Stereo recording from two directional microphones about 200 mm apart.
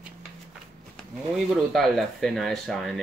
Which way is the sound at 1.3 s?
Centre (ahead or behind).